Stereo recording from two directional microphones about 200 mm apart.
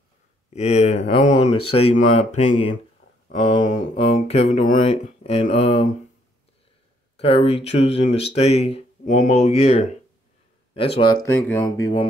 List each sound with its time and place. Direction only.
0.5 s speech: 30° left (ahead or behind)
7.2 s speech: 30° left (ahead or behind)